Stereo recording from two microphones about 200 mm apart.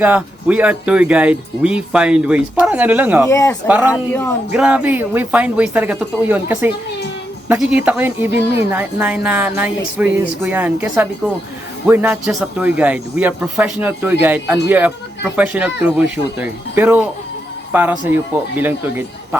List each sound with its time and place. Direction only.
0.0 s speech: 5° right (ahead or behind)
3.2 s speech: 15° left (ahead or behind)
3.7 s speech: 10° right (ahead or behind)
11.9 s a man's voice: 10° right (ahead or behind)